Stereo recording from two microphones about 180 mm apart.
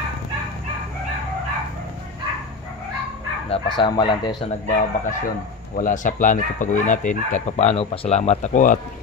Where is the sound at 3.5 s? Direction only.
25° left (ahead or behind).